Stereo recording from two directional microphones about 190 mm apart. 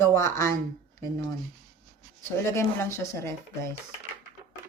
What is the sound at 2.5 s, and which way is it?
Speech, 10° left (ahead or behind).